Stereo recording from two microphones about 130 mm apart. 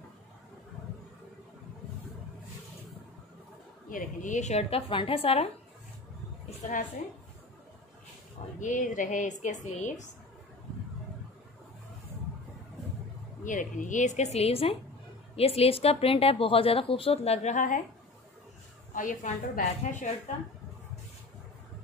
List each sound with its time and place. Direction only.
3.9 s a woman's voice: 75° left (ahead or behind); by 5.5 s 50° left (ahead or behind)
8.5 s a woman's voice: 80° left
13.4 s a woman's voice: 80° left
18.9 s a woman's voice: 90° left; by 20.1 s 70° left (ahead or behind)